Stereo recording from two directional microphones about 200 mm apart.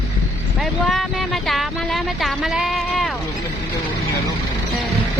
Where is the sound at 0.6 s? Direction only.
Centre (ahead or behind).